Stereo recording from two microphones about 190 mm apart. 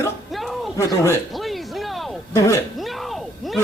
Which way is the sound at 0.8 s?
15° left (ahead or behind).